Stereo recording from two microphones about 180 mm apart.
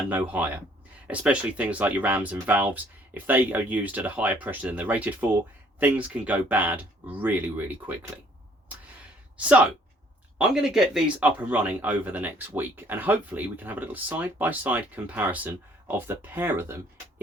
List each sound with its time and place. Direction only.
0.1 s speech: 10° right (ahead or behind)
9.4 s speech: 10° right (ahead or behind)